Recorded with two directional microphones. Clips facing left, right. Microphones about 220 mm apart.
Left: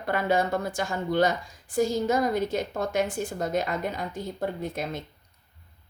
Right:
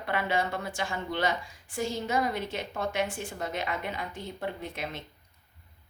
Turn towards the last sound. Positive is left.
turn(degrees=45)  # may be behind; listen again after turning